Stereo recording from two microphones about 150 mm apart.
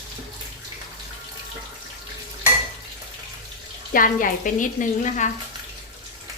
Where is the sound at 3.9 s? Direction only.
65° left (ahead or behind).